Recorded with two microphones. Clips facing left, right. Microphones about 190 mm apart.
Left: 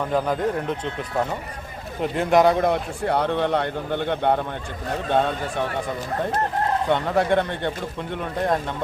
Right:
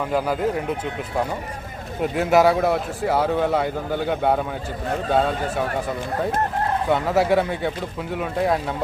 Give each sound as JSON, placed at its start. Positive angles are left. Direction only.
{"t": 0.1, "sound": "speech", "side_deg": -5}
{"t": 2.0, "sound": "speech", "side_deg": -5}
{"t": 6.8, "sound": "speech", "side_deg": -5}